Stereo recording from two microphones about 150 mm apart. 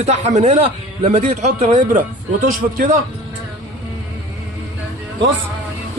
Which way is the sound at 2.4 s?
65° right (ahead or behind).